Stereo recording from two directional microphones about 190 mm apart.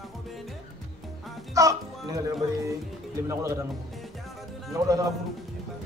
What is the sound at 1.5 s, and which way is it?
Speech, 15° right (ahead or behind).